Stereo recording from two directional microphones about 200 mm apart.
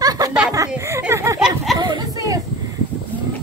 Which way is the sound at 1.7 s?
20° right (ahead or behind).